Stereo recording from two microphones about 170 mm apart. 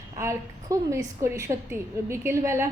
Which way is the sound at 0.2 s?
20° right (ahead or behind).